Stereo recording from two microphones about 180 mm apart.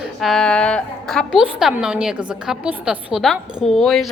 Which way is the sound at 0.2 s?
Centre (ahead or behind).